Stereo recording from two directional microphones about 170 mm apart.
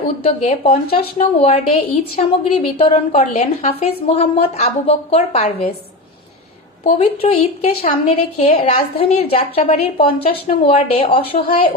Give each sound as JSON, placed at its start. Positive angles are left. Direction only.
{"t": 0.3, "sound": "a woman's voice", "side_deg": 35}
{"t": 6.8, "sound": "a woman's voice", "side_deg": 40}